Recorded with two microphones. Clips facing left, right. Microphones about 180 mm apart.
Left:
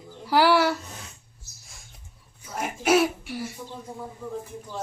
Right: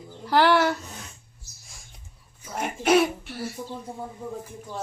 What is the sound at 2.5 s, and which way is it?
Speech, centre (ahead or behind).